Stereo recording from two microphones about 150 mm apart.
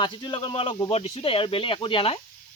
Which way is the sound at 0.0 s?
30° left (ahead or behind).